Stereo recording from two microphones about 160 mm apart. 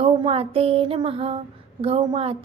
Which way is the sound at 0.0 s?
35° right (ahead or behind).